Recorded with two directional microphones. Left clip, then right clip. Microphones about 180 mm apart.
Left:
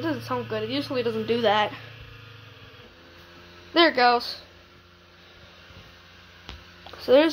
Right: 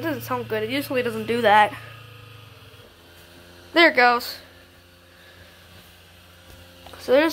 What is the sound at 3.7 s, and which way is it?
Speech, 5° right (ahead or behind).